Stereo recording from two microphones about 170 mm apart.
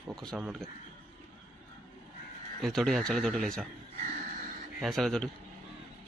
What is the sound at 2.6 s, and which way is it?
Speech, centre (ahead or behind).